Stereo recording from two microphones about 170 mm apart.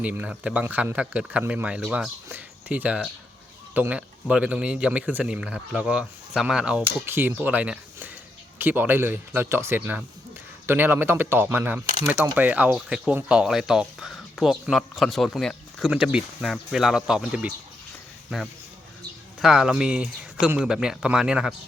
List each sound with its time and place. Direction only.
0.0 s speech: 10° right (ahead or behind)
19.4 s speech: centre (ahead or behind)